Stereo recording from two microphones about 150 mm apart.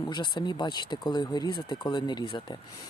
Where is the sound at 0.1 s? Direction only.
30° left (ahead or behind).